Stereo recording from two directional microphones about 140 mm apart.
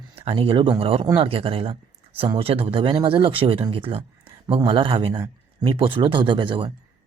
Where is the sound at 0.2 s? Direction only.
40° right (ahead or behind).